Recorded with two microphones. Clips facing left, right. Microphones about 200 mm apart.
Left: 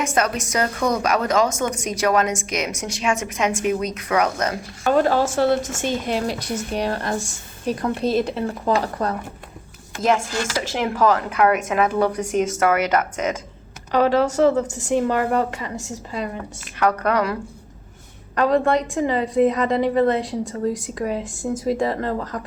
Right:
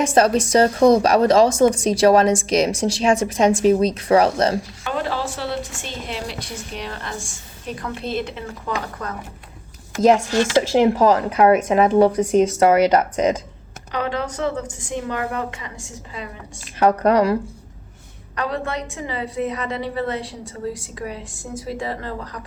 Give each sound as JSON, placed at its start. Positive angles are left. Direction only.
{"t": 0.0, "sound": "a woman's voice", "side_deg": -30}
{"t": 4.8, "sound": "a woman's voice", "side_deg": 45}
{"t": 10.1, "sound": "a woman's voice", "side_deg": -30}
{"t": 13.9, "sound": "speech", "side_deg": 40}
{"t": 16.8, "sound": "a woman's voice", "side_deg": -30}
{"t": 18.3, "sound": "a woman's voice", "side_deg": 40}